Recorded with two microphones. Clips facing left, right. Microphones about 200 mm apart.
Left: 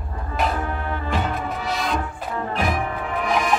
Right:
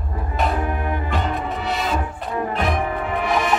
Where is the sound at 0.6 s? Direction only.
15° right (ahead or behind).